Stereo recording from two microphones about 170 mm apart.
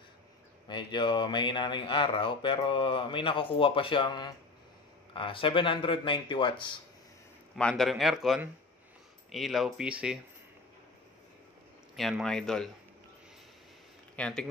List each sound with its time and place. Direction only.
0.7 s speech: 25° left (ahead or behind)
7.5 s speech: 5° left (ahead or behind)
11.9 s speech: centre (ahead or behind)
14.1 s speech: 5° left (ahead or behind)